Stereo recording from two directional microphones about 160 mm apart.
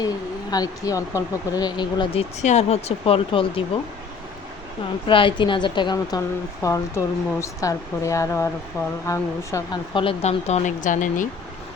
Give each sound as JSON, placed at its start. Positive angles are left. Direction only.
{"t": 0.5, "sound": "speech", "side_deg": 20}
{"t": 2.4, "sound": "speech", "side_deg": 45}
{"t": 5.0, "sound": "speech", "side_deg": 30}
{"t": 9.9, "sound": "speech", "side_deg": 35}